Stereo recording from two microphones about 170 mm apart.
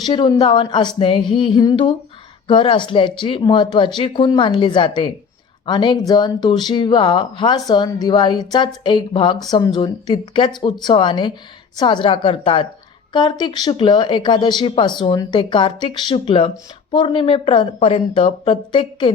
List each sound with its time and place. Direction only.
0.0 s a woman's voice: 25° left (ahead or behind)